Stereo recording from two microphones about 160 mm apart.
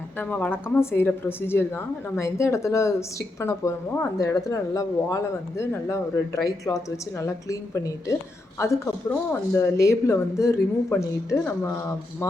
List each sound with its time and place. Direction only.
0.2 s a woman's voice: 10° left (ahead or behind)